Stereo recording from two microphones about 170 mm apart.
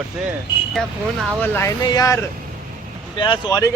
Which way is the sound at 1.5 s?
20° left (ahead or behind).